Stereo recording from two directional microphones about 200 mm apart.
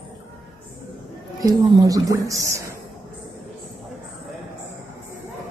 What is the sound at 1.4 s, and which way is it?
A woman's voice, 20° right (ahead or behind).